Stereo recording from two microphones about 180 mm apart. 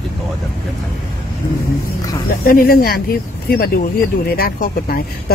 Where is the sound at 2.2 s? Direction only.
55° left (ahead or behind).